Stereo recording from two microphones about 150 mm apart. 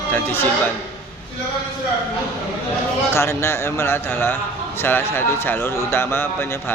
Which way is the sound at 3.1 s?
15° left (ahead or behind).